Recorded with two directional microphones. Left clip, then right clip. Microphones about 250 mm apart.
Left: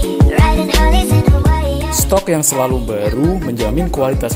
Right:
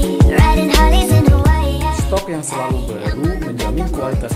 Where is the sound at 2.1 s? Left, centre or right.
Left.